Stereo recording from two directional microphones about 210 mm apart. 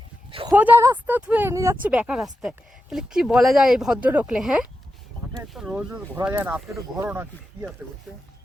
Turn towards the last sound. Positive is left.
turn(degrees=-10)  # may be behind; listen again after turning